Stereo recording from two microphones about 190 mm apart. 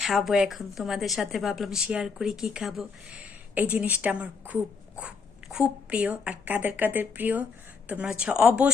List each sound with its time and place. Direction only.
0.0 s a woman's voice: centre (ahead or behind)